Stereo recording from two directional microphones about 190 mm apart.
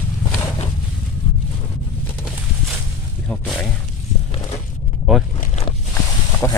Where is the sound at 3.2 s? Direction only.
5° left (ahead or behind).